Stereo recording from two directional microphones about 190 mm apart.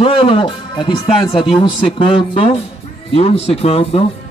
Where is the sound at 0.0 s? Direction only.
25° left (ahead or behind).